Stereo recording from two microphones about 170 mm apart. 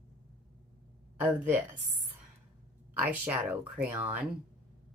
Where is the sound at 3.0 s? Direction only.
10° right (ahead or behind).